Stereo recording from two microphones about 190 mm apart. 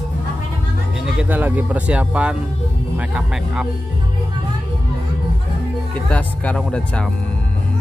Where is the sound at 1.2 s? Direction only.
10° right (ahead or behind).